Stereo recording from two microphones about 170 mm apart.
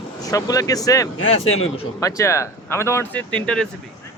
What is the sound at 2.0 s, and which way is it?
Speech, 15° left (ahead or behind).